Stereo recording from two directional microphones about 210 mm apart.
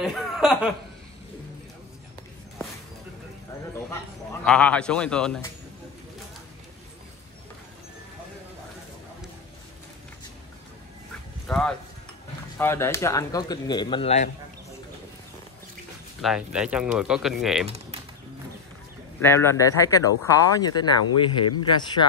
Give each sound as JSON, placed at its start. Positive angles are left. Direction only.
{"t": 0.0, "sound": "laughter", "side_deg": 0}
{"t": 3.9, "sound": "a man's voice", "side_deg": 10}
{"t": 11.4, "sound": "speech", "side_deg": 5}
{"t": 16.2, "sound": "a man's voice", "side_deg": -5}
{"t": 19.2, "sound": "speech", "side_deg": 10}